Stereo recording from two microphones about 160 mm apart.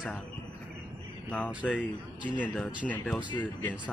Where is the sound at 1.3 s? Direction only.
10° left (ahead or behind).